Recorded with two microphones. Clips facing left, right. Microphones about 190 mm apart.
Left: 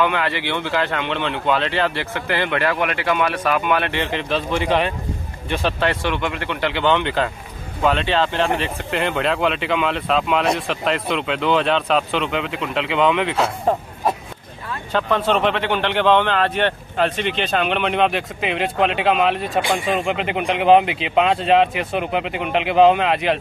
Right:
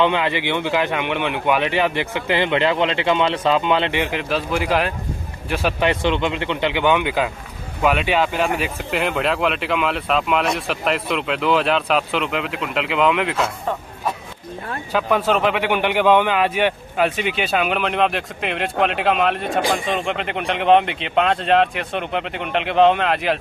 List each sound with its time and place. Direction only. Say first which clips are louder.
0.0 s speech: right 2 dB; 20° right (ahead or behind); by 13.4 s centre (ahead or behind)
14.9 s speech: even; 10° right (ahead or behind)